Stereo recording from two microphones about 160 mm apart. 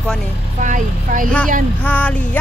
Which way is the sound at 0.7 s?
55° right (ahead or behind).